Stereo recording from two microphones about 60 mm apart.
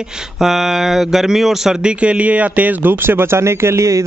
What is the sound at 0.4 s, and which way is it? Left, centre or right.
Speech, centre.